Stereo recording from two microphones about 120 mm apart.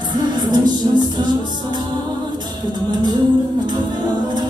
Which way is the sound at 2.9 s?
35° right (ahead or behind).